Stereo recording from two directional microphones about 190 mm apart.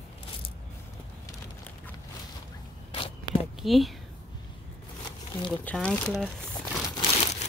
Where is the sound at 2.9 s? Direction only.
30° left (ahead or behind).